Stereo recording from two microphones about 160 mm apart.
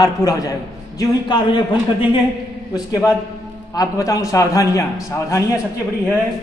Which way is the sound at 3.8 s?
20° left (ahead or behind).